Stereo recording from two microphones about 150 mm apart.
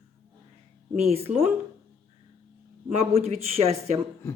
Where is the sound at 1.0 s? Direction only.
45° right (ahead or behind).